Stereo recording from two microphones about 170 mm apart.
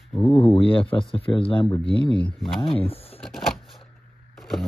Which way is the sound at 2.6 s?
35° left (ahead or behind).